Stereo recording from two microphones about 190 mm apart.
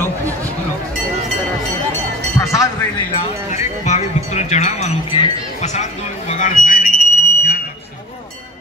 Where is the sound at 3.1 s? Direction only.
35° left (ahead or behind).